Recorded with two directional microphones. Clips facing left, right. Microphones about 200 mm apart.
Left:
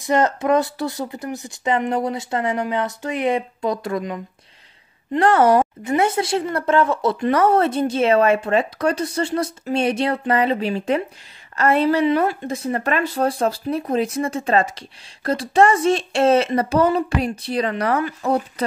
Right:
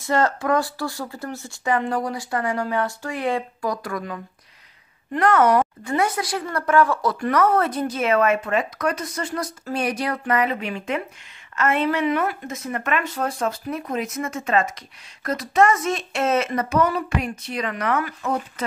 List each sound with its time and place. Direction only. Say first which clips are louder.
0.0 s speech: left 3 dB; 20° left (ahead or behind)